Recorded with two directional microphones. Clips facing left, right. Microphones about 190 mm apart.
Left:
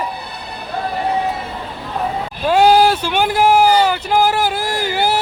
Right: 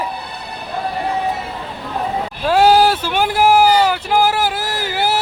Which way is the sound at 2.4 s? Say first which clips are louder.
Left 1 dB; 5° right (ahead or behind).